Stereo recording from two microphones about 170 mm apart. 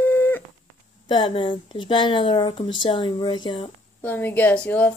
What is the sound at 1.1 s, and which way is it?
Speech, 25° left (ahead or behind).